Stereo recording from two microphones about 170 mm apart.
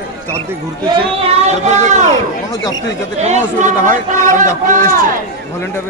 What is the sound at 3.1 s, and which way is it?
A man's voice, 45° right (ahead or behind).